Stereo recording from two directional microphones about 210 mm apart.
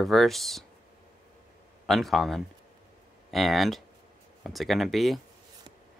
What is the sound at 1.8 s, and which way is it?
Speech, centre (ahead or behind).